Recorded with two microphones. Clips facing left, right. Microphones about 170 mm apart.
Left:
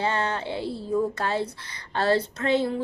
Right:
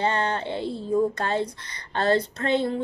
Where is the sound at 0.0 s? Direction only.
5° left (ahead or behind).